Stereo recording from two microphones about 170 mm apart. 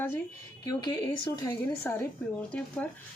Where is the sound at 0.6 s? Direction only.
25° left (ahead or behind).